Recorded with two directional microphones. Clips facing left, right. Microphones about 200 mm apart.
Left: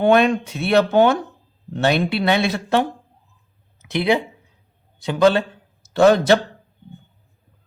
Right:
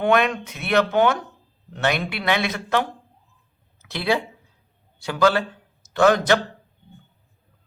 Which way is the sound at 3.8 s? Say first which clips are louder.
Left 4 dB; 20° left (ahead or behind).